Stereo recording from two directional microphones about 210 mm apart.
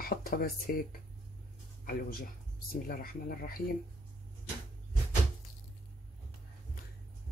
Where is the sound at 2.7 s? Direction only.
45° left (ahead or behind).